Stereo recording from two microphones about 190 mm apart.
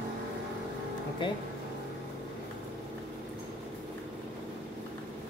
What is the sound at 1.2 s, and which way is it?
Speech, 25° left (ahead or behind).